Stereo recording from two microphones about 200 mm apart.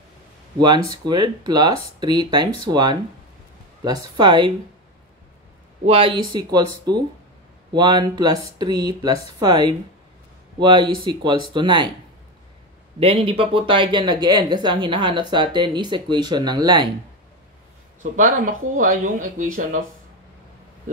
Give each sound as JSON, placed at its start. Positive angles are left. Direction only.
{"t": 0.6, "sound": "speech", "side_deg": -20}
{"t": 5.9, "sound": "speech", "side_deg": -25}
{"t": 13.0, "sound": "speech", "side_deg": -30}
{"t": 18.8, "sound": "speech", "side_deg": -40}